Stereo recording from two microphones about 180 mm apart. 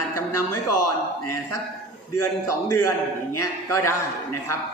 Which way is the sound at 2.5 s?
15° left (ahead or behind).